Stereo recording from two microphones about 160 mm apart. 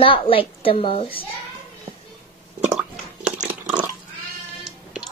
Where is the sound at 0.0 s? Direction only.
35° left (ahead or behind).